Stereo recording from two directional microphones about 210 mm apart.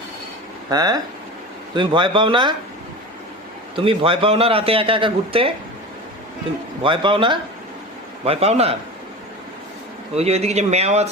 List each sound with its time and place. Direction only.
0.7 s a man's voice: 20° right (ahead or behind)
3.8 s a man's voice: 25° right (ahead or behind)
6.8 s a man's voice: 25° right (ahead or behind)
10.2 s a man's voice: 30° right (ahead or behind)